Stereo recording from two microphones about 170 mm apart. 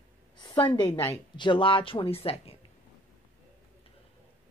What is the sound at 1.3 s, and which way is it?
Speech, 30° left (ahead or behind).